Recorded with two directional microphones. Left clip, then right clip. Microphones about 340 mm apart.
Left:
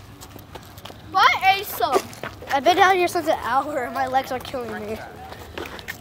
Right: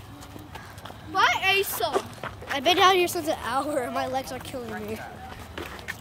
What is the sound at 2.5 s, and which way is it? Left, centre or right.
A woman's voice, centre.